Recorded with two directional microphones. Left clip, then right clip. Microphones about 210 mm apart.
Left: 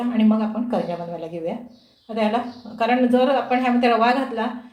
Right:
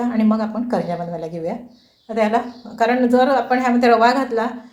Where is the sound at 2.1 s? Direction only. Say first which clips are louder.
Right 4 dB; 25° right (ahead or behind).